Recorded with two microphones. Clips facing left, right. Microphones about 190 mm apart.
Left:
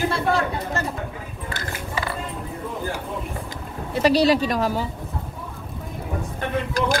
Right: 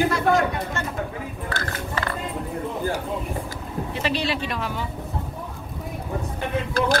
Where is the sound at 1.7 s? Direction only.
10° left (ahead or behind).